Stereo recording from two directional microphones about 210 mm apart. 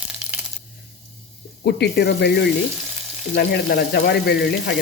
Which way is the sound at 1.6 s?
50° left (ahead or behind).